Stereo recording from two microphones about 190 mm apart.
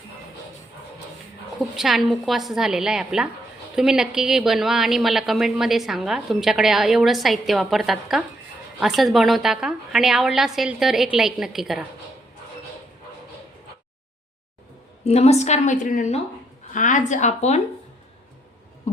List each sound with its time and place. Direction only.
1.7 s a woman's voice: centre (ahead or behind)
15.0 s a woman's voice: 35° left (ahead or behind)